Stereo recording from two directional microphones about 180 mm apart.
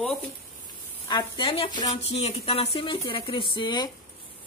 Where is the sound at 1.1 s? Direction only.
25° left (ahead or behind).